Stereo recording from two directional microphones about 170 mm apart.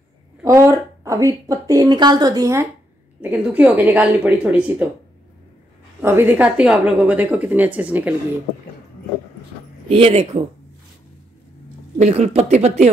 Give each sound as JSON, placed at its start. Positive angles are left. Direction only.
{"t": 0.4, "sound": "a woman's voice", "side_deg": -15}
{"t": 6.0, "sound": "a woman's voice", "side_deg": -10}
{"t": 9.8, "sound": "speech", "side_deg": -35}
{"t": 12.0, "sound": "speech", "side_deg": -40}